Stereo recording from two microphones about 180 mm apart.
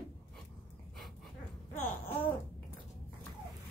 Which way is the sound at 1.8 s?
10° left (ahead or behind).